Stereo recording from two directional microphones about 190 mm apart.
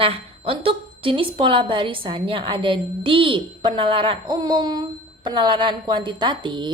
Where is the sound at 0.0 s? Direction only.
30° right (ahead or behind).